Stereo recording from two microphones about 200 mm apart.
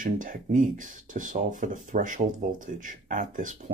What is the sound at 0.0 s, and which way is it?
Speech, 40° right (ahead or behind).